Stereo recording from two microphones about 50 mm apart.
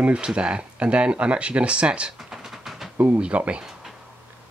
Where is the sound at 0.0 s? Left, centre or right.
Centre.